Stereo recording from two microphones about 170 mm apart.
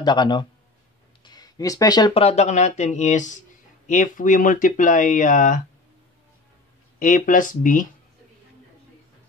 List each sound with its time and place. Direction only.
0.0 s a man's voice: 25° left (ahead or behind); by 5.6 s 50° left (ahead or behind)
7.0 s speech: 50° left (ahead or behind)